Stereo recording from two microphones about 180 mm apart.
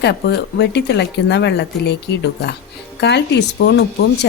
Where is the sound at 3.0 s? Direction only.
70° left (ahead or behind).